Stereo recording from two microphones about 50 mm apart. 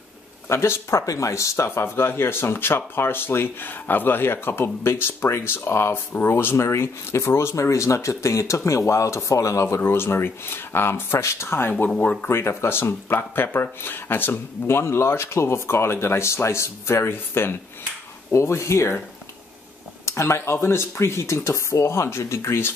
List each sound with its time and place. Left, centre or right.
0.5 s speech: left
9.8 s speech: left
11.8 s speech: left
12.3 s speech: left
14.8 s speech: left
18.3 s speech: left
20.1 s speech: left